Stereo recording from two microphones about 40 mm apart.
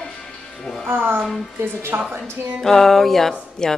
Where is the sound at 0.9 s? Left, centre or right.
Right.